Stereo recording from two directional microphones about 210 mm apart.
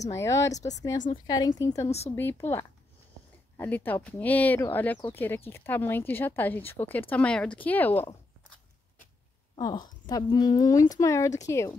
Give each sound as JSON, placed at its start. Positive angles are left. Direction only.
{"t": 0.1, "sound": "speech", "side_deg": 15}
{"t": 0.6, "sound": "a woman's voice", "side_deg": 35}
{"t": 1.2, "sound": "speech", "side_deg": 15}
{"t": 9.6, "sound": "speech", "side_deg": 20}